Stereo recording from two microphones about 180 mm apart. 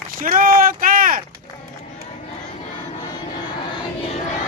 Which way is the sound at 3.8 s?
35° left (ahead or behind).